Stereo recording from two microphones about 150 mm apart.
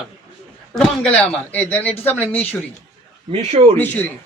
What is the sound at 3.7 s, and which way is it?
Speech, 10° left (ahead or behind).